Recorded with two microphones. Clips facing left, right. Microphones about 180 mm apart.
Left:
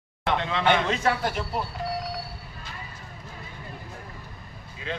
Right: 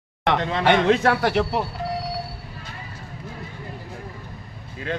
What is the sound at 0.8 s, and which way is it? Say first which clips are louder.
Speech: right 7 dB; 60° right (ahead or behind).